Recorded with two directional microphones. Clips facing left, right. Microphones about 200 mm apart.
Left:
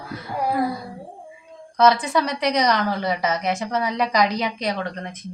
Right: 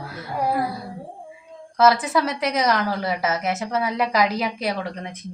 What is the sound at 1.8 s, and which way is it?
A woman's voice, 5° right (ahead or behind).